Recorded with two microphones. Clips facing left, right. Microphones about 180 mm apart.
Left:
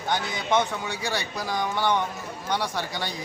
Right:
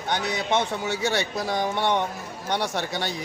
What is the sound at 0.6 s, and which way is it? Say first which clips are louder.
Speech: right 1 dB; 25° right (ahead or behind).